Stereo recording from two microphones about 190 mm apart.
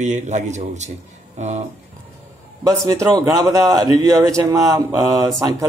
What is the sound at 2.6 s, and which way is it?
A man's voice, 15° right (ahead or behind).